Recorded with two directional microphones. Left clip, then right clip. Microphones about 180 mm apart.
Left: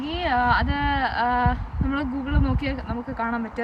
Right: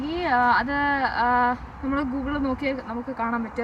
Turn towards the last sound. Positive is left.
turn(degrees=5)  # may be behind; listen again after turning